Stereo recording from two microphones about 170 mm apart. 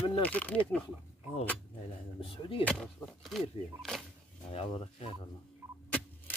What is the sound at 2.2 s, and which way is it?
Speech, 30° left (ahead or behind).